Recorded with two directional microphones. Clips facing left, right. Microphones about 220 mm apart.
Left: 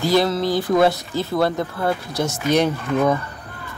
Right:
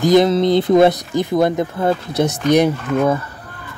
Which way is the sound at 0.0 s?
20° right (ahead or behind).